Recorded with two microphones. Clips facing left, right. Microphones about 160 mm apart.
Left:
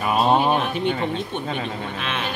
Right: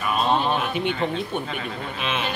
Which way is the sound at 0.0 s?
40° left (ahead or behind).